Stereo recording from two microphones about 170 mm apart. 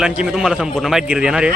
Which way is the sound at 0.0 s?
5° right (ahead or behind).